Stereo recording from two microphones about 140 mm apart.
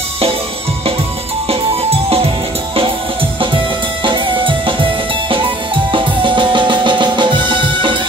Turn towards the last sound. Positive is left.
turn(degrees=-35)  # may be behind; listen again after turning